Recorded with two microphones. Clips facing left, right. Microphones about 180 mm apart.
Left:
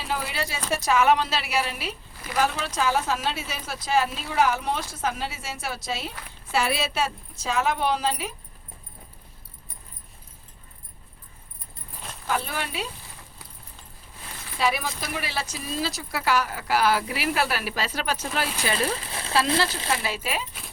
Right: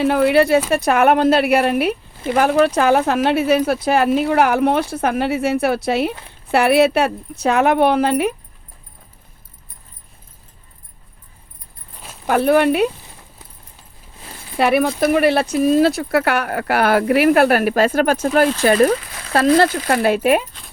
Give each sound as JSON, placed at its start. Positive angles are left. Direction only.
{"t": 0.0, "sound": "speech", "side_deg": -60}
{"t": 12.2, "sound": "speech", "side_deg": -60}
{"t": 14.6, "sound": "speech", "side_deg": -60}
{"t": 18.9, "sound": "a sound", "side_deg": 30}
{"t": 19.3, "sound": "speech", "side_deg": -55}